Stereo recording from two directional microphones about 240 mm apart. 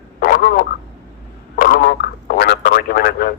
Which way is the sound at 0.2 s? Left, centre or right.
Left.